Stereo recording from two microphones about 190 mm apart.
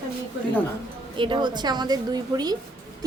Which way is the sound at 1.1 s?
25° right (ahead or behind).